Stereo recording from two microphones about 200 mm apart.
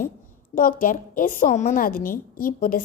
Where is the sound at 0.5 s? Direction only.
45° left (ahead or behind).